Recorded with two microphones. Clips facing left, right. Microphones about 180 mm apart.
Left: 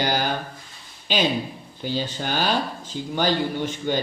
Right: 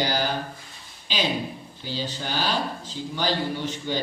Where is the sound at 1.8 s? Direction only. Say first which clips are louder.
Left 5 dB; 55° left (ahead or behind).